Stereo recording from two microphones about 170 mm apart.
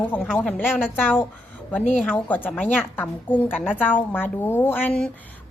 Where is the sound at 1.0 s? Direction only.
10° left (ahead or behind).